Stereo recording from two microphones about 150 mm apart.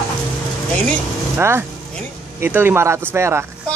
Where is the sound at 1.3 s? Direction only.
15° right (ahead or behind).